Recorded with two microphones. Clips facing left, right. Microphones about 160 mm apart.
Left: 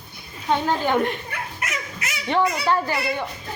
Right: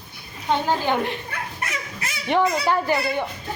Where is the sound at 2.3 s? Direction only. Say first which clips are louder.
Right 1 dB; 15° right (ahead or behind).